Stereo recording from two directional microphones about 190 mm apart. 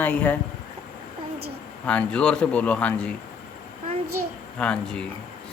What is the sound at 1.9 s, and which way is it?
Speech, 5° left (ahead or behind).